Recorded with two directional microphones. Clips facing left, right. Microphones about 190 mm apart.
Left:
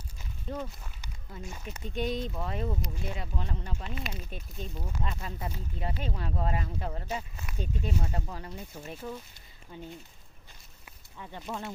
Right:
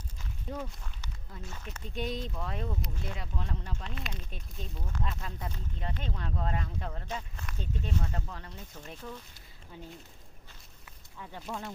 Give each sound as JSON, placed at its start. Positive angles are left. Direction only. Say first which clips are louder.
{"t": 0.7, "sound": "speech", "louder": "even", "side_deg": 5}
{"t": 9.7, "sound": "speech", "louder": "left 3 dB", "side_deg": 0}
{"t": 11.2, "sound": "speech", "louder": "left 2 dB", "side_deg": 0}